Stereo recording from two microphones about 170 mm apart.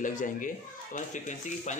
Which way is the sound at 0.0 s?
50° left (ahead or behind).